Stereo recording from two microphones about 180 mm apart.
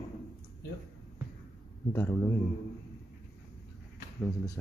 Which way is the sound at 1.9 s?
15° left (ahead or behind).